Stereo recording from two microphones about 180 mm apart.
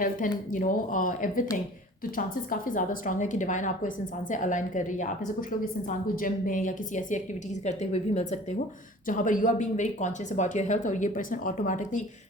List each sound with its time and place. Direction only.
0.0 s a woman's voice: 45° left (ahead or behind)